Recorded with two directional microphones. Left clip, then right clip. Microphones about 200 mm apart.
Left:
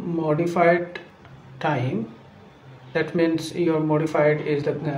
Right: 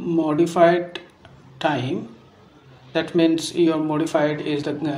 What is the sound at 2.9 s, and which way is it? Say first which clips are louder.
Speech: right 3 dB; 25° right (ahead or behind).